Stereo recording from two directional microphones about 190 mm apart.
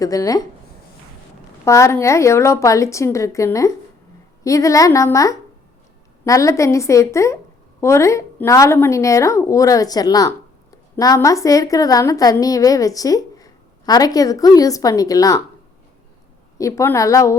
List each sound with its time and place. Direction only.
0.0 s speech: 20° left (ahead or behind)
1.6 s a woman's voice: 15° left (ahead or behind)
16.6 s a woman's voice: 15° left (ahead or behind)